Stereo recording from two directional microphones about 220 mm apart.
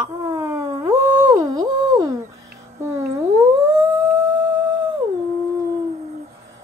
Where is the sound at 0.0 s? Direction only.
15° right (ahead or behind).